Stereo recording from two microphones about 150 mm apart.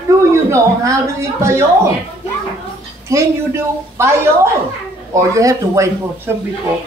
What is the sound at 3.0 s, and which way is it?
A man's voice, 20° right (ahead or behind).